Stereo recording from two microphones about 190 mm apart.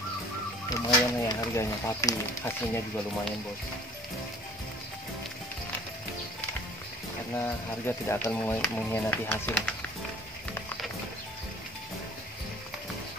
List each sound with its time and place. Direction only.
0.7 s speech: 20° left (ahead or behind)
7.3 s speech: 10° left (ahead or behind)